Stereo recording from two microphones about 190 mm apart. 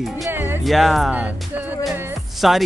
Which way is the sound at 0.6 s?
Centre (ahead or behind).